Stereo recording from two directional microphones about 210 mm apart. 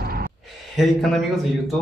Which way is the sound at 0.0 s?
45° right (ahead or behind).